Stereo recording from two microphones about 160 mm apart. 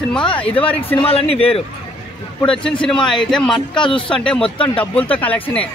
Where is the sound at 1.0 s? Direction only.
35° left (ahead or behind).